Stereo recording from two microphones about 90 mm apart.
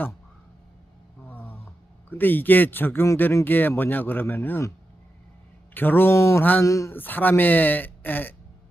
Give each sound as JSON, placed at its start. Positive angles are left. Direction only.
{"t": 1.3, "sound": "a sound", "side_deg": 20}
{"t": 2.0, "sound": "speech", "side_deg": 20}
{"t": 5.7, "sound": "speech", "side_deg": 20}
{"t": 6.4, "sound": "speech", "side_deg": 20}
{"t": 6.7, "sound": "speech", "side_deg": 35}
{"t": 6.9, "sound": "speech", "side_deg": 20}